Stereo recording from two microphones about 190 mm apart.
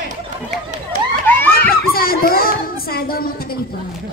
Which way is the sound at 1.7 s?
50° left (ahead or behind).